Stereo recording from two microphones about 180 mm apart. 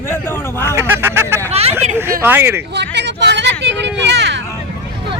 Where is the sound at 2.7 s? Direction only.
75° right (ahead or behind).